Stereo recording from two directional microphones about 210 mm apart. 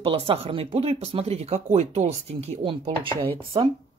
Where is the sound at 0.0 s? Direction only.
25° right (ahead or behind).